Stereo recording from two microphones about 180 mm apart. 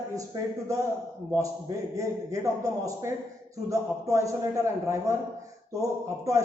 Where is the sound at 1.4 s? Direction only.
20° right (ahead or behind).